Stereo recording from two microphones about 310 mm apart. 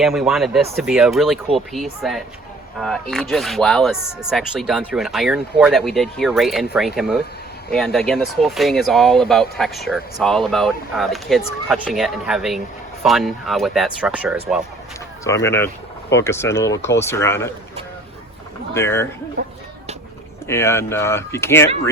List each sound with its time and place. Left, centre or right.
0.0 s speech: centre
15.2 s speech: centre
18.7 s speech: centre
19.4 s speech: right
20.5 s speech: centre